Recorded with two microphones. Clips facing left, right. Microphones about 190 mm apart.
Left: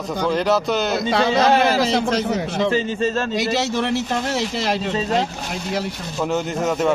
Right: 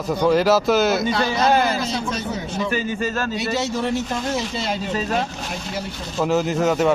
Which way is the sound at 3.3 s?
80° left.